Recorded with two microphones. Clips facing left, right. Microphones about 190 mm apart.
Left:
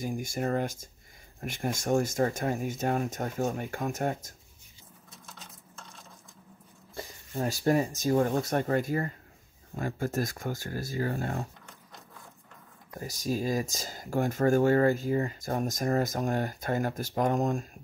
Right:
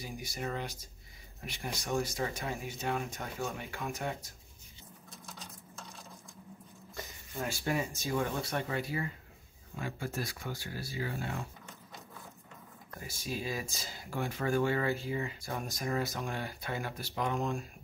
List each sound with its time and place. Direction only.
0.0 s speech: 50° left (ahead or behind)
5.1 s a sound: centre (ahead or behind)
7.0 s speech: 35° left (ahead or behind)
13.0 s speech: 40° left (ahead or behind)